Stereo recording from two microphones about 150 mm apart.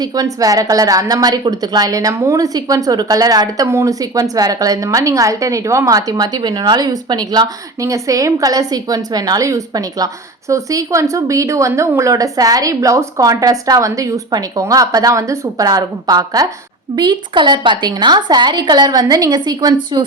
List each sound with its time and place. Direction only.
0.0 s a woman's voice: 25° right (ahead or behind)